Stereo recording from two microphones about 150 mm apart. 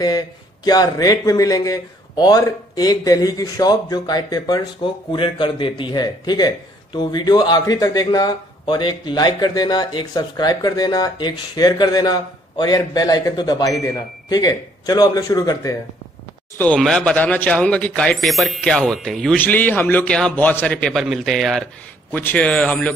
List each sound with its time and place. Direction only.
0.7 s a man's voice: 25° left (ahead or behind)
16.5 s speech: 5° left (ahead or behind)
22.1 s a man's voice: 10° left (ahead or behind)